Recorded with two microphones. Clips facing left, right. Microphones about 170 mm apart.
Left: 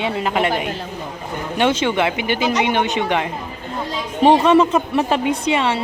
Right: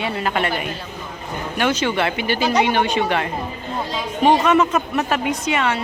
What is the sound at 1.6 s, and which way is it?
Speech, 25° left (ahead or behind).